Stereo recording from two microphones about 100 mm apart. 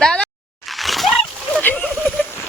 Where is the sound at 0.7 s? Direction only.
Centre (ahead or behind).